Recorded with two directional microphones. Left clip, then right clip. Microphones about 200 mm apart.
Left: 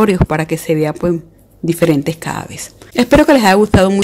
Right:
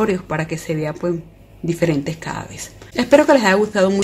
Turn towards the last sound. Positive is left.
turn(degrees=40)  # may be behind; listen again after turning